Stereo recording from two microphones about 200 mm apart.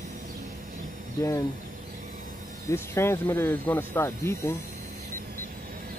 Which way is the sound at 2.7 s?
15° left (ahead or behind).